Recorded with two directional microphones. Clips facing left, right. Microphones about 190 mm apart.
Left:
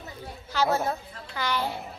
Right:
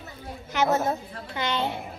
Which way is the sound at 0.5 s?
20° right (ahead or behind).